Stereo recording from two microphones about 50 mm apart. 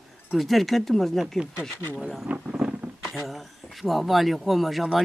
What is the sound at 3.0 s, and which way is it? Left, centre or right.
Speech, centre.